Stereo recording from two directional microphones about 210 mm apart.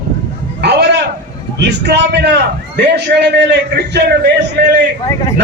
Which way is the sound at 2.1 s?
50° right (ahead or behind).